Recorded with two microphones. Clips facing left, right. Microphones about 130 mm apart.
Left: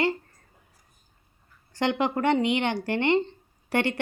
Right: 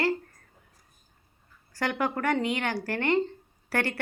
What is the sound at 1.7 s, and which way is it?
Speech, 20° left (ahead or behind).